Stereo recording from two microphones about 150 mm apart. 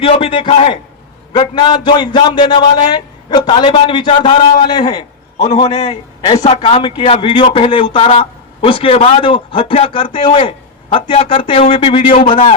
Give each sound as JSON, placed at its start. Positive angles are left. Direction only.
{"t": 0.0, "sound": "a man's voice", "side_deg": 35}
{"t": 6.3, "sound": "a man's voice", "side_deg": 45}
{"t": 6.6, "sound": "a man's voice", "side_deg": 35}